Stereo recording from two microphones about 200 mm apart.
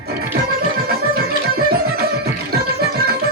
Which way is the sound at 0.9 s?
50° right (ahead or behind).